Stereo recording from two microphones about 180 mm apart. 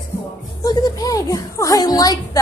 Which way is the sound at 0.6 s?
20° left (ahead or behind).